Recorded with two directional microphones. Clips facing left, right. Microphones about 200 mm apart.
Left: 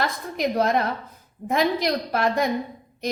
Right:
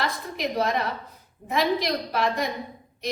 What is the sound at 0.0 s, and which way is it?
A woman's voice, 50° left (ahead or behind).